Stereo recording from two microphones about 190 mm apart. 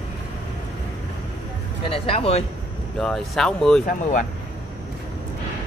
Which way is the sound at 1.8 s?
30° left (ahead or behind).